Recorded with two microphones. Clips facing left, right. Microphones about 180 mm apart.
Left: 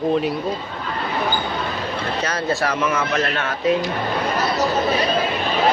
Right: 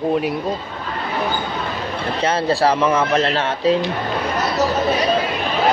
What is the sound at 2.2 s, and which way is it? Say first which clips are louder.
Speech: right 7 dB; 30° right (ahead or behind).